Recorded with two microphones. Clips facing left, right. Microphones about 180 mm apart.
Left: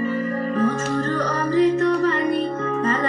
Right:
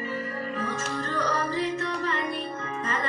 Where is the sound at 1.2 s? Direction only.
50° left (ahead or behind).